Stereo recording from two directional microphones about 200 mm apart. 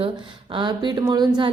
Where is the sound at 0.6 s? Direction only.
20° right (ahead or behind).